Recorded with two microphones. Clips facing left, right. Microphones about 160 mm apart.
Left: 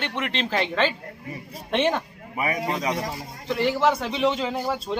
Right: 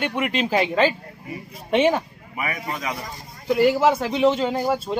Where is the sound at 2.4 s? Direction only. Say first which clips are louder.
Left 3 dB; 30° left (ahead or behind).